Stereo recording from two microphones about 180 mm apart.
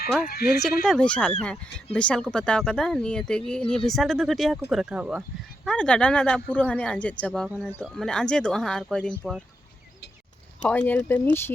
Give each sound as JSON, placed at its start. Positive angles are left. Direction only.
{"t": 0.3, "sound": "speech", "side_deg": 60}
{"t": 0.9, "sound": "speech", "side_deg": 5}
{"t": 5.6, "sound": "speech", "side_deg": 5}
{"t": 7.4, "sound": "speech", "side_deg": -5}
{"t": 10.6, "sound": "speech", "side_deg": 5}